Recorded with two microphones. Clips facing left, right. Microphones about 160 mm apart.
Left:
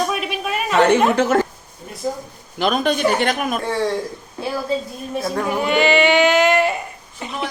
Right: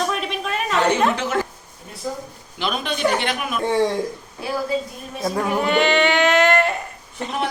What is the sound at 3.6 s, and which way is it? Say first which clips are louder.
Speech: right 7 dB; 20° right (ahead or behind).